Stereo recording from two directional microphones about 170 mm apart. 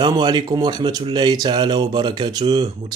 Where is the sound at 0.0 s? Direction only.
25° right (ahead or behind).